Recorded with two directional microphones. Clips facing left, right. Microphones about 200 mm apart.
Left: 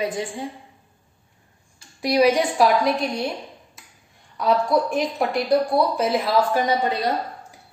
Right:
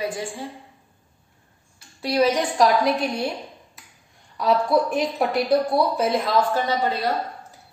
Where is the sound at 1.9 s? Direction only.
15° left (ahead or behind).